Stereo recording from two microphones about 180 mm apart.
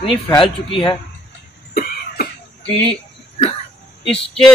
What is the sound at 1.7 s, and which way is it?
Cough, 55° left (ahead or behind).